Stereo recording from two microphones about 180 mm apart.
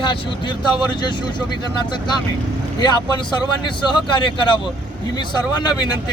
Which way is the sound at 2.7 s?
25° left (ahead or behind).